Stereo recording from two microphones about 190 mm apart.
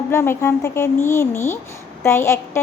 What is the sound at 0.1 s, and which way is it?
A woman's voice, 15° left (ahead or behind).